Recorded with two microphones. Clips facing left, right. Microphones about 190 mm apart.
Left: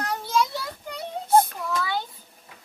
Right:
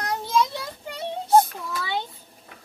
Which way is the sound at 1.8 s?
25° right (ahead or behind).